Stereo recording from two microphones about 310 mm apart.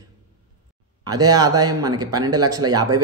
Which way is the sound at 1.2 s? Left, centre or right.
Centre.